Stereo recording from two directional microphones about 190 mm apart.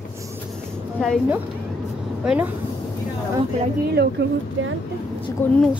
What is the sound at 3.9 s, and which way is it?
Speech, 60° right (ahead or behind).